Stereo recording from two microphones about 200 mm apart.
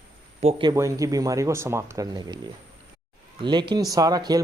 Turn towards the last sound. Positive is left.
turn(degrees=-20)  # may be behind; listen again after turning